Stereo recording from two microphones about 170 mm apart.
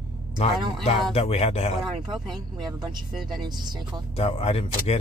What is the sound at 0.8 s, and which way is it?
Speech, 35° left (ahead or behind).